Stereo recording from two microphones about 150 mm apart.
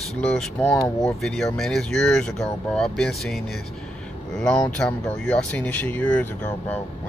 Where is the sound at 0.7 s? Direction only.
20° left (ahead or behind).